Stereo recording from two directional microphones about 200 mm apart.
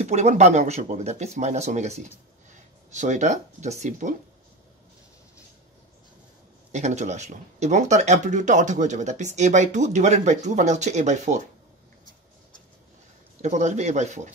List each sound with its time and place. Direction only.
0.0 s speech: 35° right (ahead or behind)
6.7 s speech: 35° right (ahead or behind)
13.4 s speech: 35° right (ahead or behind)